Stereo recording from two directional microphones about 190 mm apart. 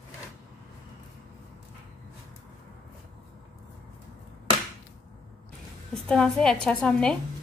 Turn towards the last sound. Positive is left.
turn(degrees=5)  # may be behind; listen again after turning